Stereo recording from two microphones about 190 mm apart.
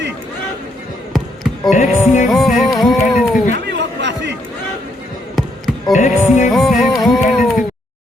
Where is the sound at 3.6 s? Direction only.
65° right (ahead or behind).